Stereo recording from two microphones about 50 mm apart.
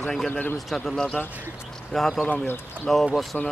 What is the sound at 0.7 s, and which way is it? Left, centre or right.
Speech, centre.